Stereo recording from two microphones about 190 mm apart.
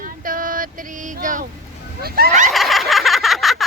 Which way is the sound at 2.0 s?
55° right (ahead or behind).